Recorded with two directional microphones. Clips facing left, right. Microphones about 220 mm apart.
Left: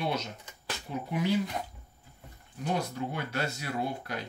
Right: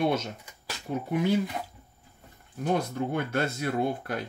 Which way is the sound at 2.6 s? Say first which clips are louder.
Right 4 dB; 50° right (ahead or behind).